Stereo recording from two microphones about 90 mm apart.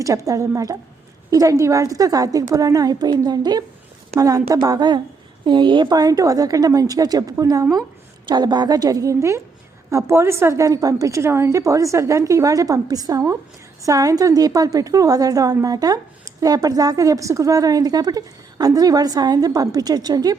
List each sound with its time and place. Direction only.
0.0 s a woman's voice: 40° right (ahead or behind)
4.2 s a woman's voice: 40° right (ahead or behind)
8.3 s a woman's voice: 55° right (ahead or behind)